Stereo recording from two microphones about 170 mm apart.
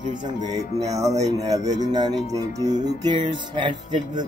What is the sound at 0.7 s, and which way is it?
Music, 20° right (ahead or behind).